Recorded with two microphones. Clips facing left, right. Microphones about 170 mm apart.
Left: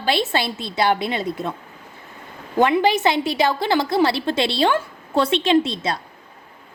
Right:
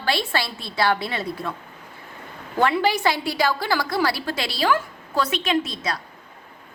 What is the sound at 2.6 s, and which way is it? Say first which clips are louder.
A woman's voice: left 3 dB; 20° left (ahead or behind).